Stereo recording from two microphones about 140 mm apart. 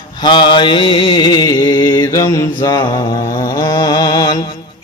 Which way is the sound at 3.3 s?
25° left (ahead or behind).